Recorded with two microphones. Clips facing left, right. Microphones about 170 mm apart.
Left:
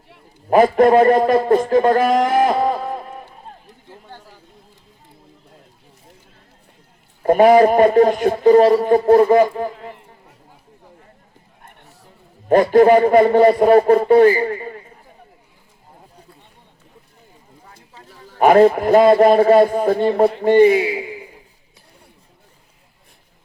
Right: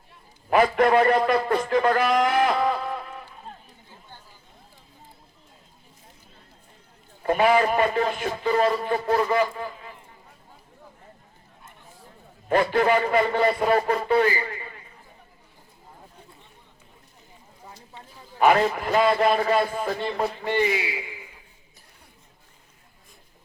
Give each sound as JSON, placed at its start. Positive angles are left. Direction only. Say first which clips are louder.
{"t": 0.5, "sound": "a man's voice", "louder": "left 7 dB", "side_deg": 45}
{"t": 2.2, "sound": "music", "louder": "left 5 dB", "side_deg": 45}
{"t": 3.8, "sound": "chatter", "louder": "left 12 dB", "side_deg": 80}
{"t": 7.2, "sound": "a man's voice", "louder": "left 9 dB", "side_deg": 40}
{"t": 11.6, "sound": "a sound", "louder": "left 4 dB", "side_deg": 65}
{"t": 12.5, "sound": "a man's voice", "louder": "left 10 dB", "side_deg": 45}
{"t": 18.3, "sound": "a man's voice", "louder": "left 9 dB", "side_deg": 45}